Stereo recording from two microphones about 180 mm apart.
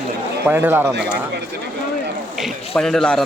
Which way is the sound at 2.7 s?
Centre (ahead or behind).